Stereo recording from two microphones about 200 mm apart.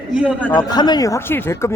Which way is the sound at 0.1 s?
5° right (ahead or behind).